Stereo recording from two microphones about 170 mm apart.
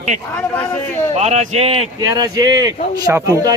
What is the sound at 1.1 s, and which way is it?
Speech, 40° right (ahead or behind).